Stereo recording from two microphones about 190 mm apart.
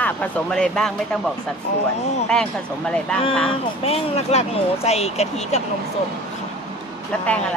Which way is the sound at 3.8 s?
30° left (ahead or behind).